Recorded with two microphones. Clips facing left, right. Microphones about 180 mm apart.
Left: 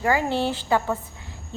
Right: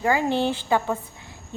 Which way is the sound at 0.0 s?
20° right (ahead or behind).